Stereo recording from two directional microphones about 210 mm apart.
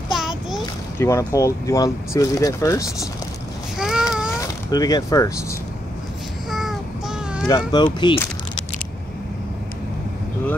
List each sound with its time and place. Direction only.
0.1 s a sound: centre (ahead or behind)
0.9 s speech: 15° left (ahead or behind)
3.7 s a sound: 5° right (ahead or behind)
4.4 s speech: 20° left (ahead or behind)
6.5 s child singing: centre (ahead or behind)
7.4 s speech: 20° left (ahead or behind)